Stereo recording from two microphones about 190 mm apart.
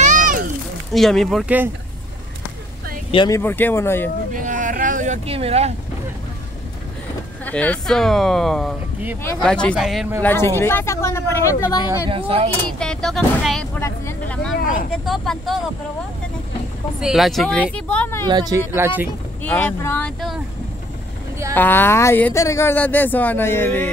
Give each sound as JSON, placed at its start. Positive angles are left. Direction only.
{"t": 0.0, "sound": "a sound", "side_deg": -45}
{"t": 0.9, "sound": "speech", "side_deg": 0}
{"t": 3.1, "sound": "speech", "side_deg": 25}
{"t": 3.3, "sound": "speech", "side_deg": 10}
{"t": 4.3, "sound": "a sound", "side_deg": -45}
{"t": 7.4, "sound": "speech", "side_deg": 5}
{"t": 10.2, "sound": "speech", "side_deg": 10}
{"t": 12.1, "sound": "speech", "side_deg": -30}
{"t": 12.7, "sound": "speech", "side_deg": 5}
{"t": 13.7, "sound": "speech", "side_deg": 15}
{"t": 17.0, "sound": "speech", "side_deg": 0}
{"t": 18.2, "sound": "speech", "side_deg": -20}
{"t": 19.4, "sound": "speech", "side_deg": 10}
{"t": 21.5, "sound": "speech", "side_deg": 10}